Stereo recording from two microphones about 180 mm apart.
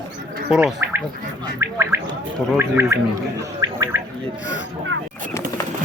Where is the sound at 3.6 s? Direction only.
20° right (ahead or behind).